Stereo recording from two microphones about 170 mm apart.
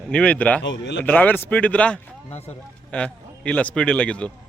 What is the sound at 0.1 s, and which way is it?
Speech, 5° left (ahead or behind).